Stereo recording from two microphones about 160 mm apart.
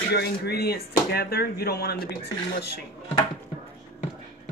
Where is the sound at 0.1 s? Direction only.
90° left.